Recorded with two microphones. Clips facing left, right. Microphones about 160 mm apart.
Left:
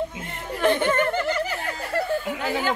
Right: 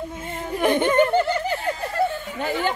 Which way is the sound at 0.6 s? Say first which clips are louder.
Right 3 dB; 15° right (ahead or behind).